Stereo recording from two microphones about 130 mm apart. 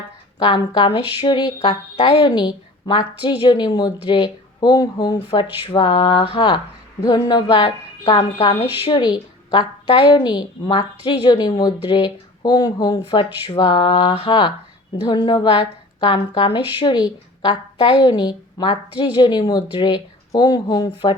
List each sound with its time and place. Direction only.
0.3 s a woman's voice: 35° left (ahead or behind)
8.8 s a woman's voice: 35° left (ahead or behind)